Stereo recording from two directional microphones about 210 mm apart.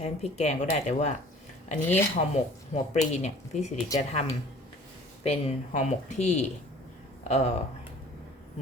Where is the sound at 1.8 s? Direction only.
10° left (ahead or behind).